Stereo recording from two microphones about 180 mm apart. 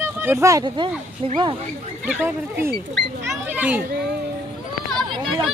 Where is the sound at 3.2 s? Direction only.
10° right (ahead or behind).